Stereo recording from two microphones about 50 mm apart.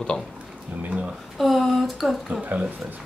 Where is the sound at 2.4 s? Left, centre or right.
Right.